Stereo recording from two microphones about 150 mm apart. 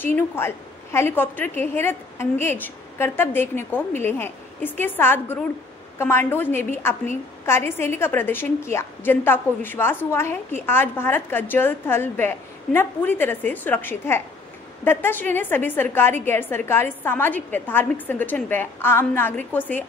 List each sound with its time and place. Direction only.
0.0 s a woman's voice: 15° left (ahead or behind)